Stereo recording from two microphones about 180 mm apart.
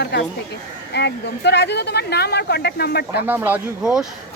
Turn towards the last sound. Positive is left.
turn(degrees=-5)  # may be behind; listen again after turning